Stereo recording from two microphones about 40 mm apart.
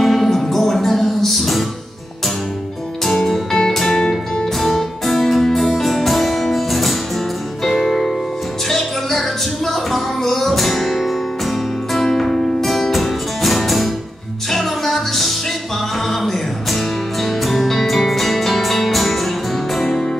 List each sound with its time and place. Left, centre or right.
0.0 s music: centre
3.1 s music: centre
4.6 s music: centre
12.0 s music: centre
12.6 s music: centre